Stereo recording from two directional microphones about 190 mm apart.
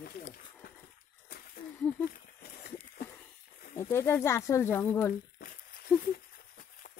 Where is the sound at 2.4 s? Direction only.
50° left (ahead or behind).